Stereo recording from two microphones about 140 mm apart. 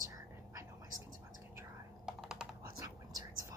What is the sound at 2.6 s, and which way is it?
Whispering, 25° right (ahead or behind).